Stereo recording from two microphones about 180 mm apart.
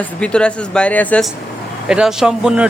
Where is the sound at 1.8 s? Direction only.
5° right (ahead or behind).